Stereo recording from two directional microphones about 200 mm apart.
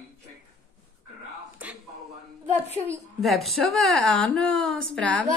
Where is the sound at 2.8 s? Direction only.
Centre (ahead or behind).